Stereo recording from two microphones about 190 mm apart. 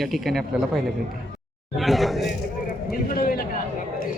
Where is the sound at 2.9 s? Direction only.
50° left (ahead or behind).